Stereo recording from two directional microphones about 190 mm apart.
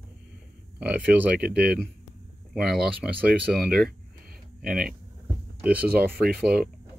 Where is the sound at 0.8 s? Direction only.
5° right (ahead or behind).